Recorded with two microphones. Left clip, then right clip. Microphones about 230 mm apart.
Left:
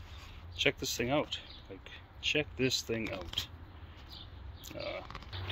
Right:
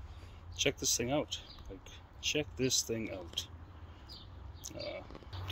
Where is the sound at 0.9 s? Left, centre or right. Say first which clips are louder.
Left 2 dB; centre.